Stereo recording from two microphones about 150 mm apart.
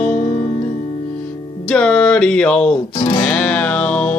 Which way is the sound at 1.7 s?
5° left (ahead or behind).